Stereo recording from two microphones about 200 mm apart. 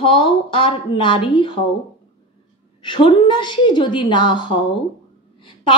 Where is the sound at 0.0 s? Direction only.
25° left (ahead or behind).